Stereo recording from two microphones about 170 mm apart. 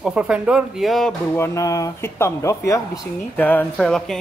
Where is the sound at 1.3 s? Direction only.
20° left (ahead or behind).